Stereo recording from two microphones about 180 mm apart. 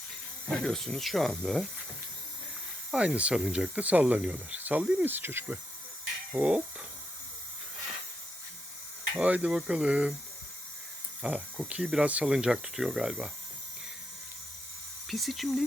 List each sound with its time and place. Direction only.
0.6 s speech: 5° left (ahead or behind)
2.9 s speech: 5° right (ahead or behind)
9.1 s speech: 5° right (ahead or behind)
11.2 s speech: 5° right (ahead or behind)
15.0 s speech: centre (ahead or behind)